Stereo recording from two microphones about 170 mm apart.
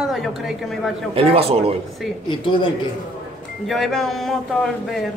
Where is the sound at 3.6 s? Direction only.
Centre (ahead or behind).